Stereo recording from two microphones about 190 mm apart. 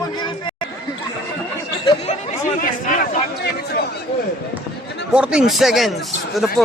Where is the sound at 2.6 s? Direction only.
50° left (ahead or behind).